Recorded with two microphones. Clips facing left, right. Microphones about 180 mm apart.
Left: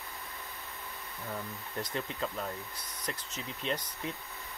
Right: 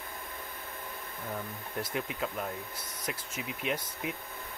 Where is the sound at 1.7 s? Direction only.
10° right (ahead or behind).